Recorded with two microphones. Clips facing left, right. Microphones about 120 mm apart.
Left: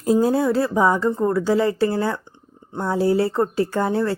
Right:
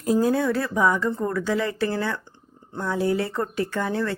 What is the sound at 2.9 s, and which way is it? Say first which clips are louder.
Speech: left 5 dB; 30° left (ahead or behind).